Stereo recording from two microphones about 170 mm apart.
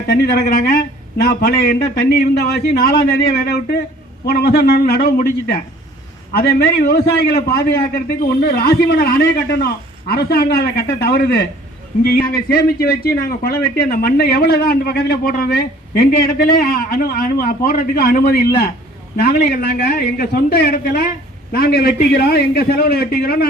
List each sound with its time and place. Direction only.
0.1 s a man's voice: 65° left (ahead or behind)